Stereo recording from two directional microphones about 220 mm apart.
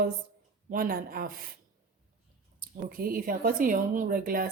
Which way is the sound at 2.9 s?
40° right (ahead or behind).